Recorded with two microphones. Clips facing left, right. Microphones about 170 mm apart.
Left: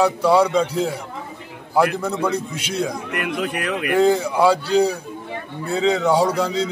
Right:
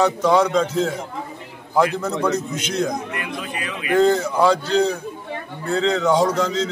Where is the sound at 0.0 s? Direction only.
10° left (ahead or behind).